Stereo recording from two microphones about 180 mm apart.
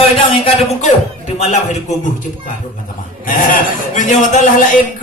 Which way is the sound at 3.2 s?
50° left (ahead or behind).